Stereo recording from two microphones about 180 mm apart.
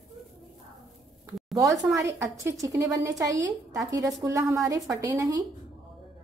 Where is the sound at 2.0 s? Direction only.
20° right (ahead or behind).